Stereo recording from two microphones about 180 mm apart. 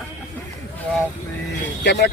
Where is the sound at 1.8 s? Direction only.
75° left (ahead or behind).